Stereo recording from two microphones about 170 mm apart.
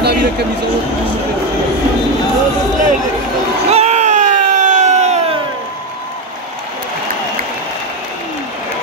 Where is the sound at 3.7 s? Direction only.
40° right (ahead or behind).